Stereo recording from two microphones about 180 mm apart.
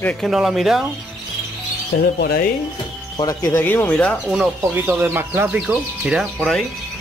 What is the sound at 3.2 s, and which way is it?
Speech, 20° left (ahead or behind).